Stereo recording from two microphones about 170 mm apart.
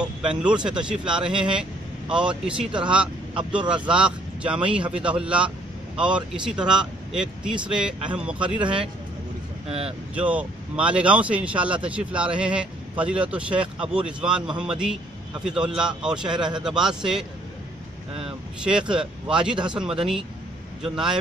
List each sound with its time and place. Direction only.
0.0 s speech: 5° right (ahead or behind)
9.7 s speech: 35° right (ahead or behind)
10.1 s speech: 10° right (ahead or behind)